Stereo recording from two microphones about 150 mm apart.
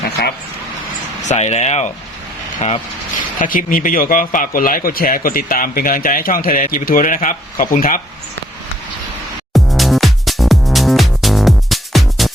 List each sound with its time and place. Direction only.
1.2 s speech: 50° left (ahead or behind)
3.3 s a man's voice: 65° left (ahead or behind)
9.5 s music: centre (ahead or behind)